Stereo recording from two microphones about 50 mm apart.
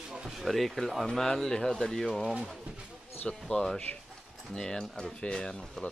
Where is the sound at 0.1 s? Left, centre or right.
Centre.